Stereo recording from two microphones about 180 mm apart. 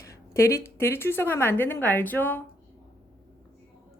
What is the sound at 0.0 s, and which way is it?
A woman's voice, 15° left (ahead or behind).